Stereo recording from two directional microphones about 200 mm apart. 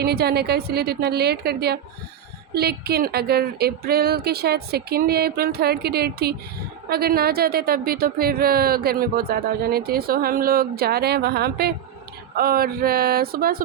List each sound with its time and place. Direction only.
0.0 s a woman's voice: 55° right (ahead or behind)